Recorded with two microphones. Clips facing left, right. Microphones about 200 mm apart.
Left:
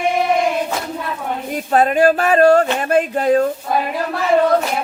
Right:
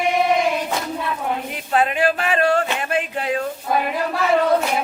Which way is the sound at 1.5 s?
40° left (ahead or behind).